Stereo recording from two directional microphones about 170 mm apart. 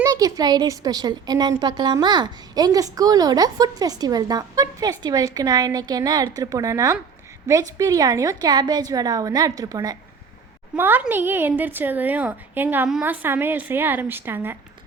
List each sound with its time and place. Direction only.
0.0 s a woman's voice: 20° right (ahead or behind)